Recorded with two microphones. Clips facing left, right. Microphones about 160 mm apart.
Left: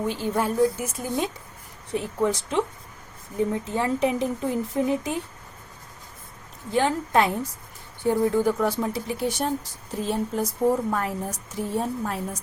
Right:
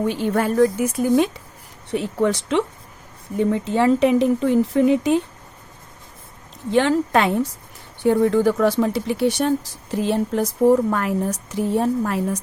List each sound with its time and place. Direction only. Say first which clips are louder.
0.1 s a woman's voice: right 5 dB; 65° right (ahead or behind); by 5.2 s 80° right
6.7 s a woman's voice: right 6 dB; 90° right; by 12.4 s 75° right (ahead or behind)